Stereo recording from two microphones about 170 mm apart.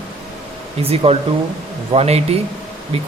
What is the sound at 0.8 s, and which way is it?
A man's voice, 35° right (ahead or behind).